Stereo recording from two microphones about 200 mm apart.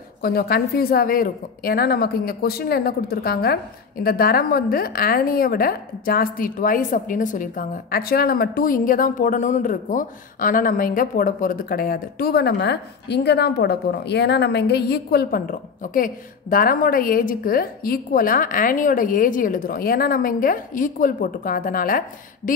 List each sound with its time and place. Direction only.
0.2 s a woman's voice: 50° left (ahead or behind)